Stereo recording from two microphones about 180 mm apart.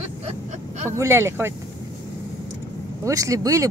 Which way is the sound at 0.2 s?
35° right (ahead or behind).